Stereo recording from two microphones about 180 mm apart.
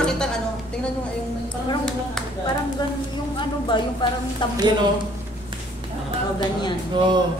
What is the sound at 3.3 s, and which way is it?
Speech, 25° left (ahead or behind).